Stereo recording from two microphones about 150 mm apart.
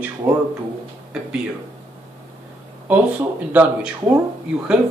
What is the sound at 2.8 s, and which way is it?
Speech, 10° right (ahead or behind).